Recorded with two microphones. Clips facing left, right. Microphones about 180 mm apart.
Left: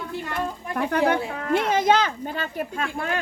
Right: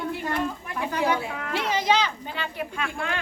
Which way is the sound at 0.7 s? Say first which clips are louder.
Left 4 dB; 55° left (ahead or behind).